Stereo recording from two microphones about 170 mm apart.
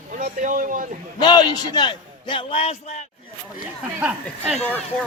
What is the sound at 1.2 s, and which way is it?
A man's voice, 25° left (ahead or behind).